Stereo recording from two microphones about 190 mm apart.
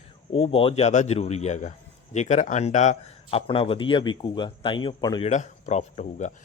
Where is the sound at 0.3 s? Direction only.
30° left (ahead or behind).